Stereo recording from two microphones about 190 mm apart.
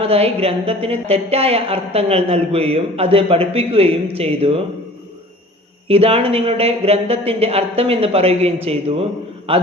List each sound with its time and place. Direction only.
0.0 s a woman's voice: 30° right (ahead or behind)
5.9 s a woman's voice: 30° right (ahead or behind)